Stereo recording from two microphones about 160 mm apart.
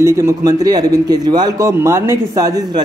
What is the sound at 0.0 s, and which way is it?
A man's voice, 15° right (ahead or behind).